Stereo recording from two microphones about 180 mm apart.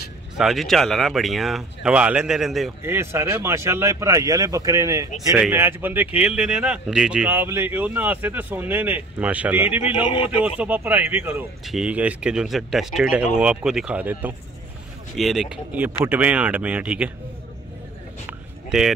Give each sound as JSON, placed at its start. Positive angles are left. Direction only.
{"t": 0.4, "sound": "speech", "side_deg": 0}
{"t": 2.8, "sound": "speech", "side_deg": -15}
{"t": 18.7, "sound": "speech", "side_deg": -5}